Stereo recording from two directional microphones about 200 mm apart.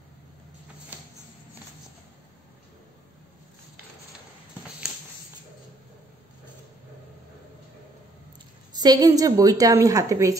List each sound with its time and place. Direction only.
8.7 s a woman's voice: 20° right (ahead or behind)